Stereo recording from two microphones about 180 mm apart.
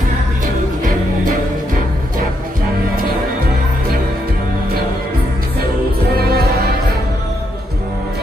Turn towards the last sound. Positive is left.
turn(degrees=-60)  # may be behind; listen again after turning